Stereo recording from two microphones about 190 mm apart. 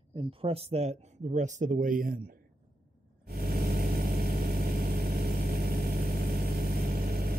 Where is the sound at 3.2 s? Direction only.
55° right (ahead or behind).